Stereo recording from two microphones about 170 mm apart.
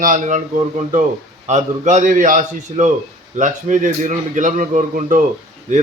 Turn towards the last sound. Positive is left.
turn(degrees=-45)  # may be behind; listen again after turning